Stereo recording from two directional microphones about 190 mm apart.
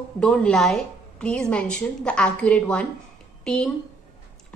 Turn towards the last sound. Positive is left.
turn(degrees=5)  # may be behind; listen again after turning